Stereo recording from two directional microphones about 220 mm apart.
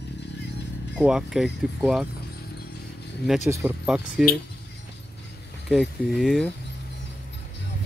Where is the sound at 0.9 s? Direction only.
5° right (ahead or behind).